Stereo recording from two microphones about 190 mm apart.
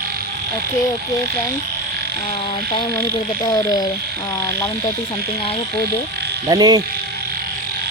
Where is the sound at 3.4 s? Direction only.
20° left (ahead or behind).